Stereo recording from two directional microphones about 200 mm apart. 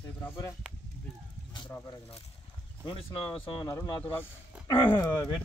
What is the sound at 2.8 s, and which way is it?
Speech, 25° left (ahead or behind).